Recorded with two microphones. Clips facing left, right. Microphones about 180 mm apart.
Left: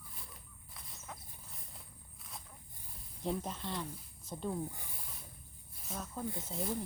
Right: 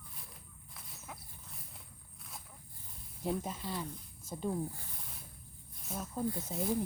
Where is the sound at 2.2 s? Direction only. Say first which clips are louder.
Even; centre (ahead or behind).